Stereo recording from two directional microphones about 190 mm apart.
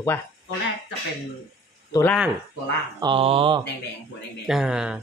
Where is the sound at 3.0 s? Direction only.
25° right (ahead or behind).